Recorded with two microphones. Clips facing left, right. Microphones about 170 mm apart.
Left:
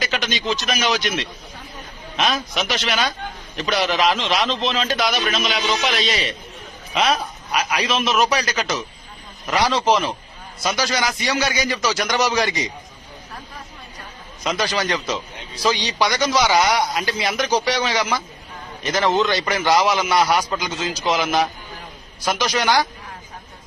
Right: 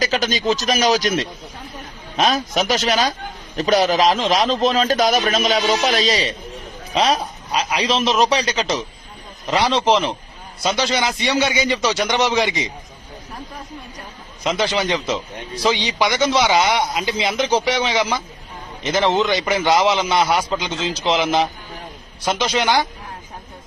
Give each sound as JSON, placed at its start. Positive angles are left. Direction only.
{"t": 0.0, "sound": "a man's voice", "side_deg": -40}
{"t": 14.4, "sound": "a man's voice", "side_deg": -25}